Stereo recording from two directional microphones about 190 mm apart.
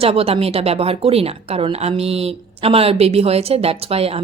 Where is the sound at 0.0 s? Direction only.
30° right (ahead or behind).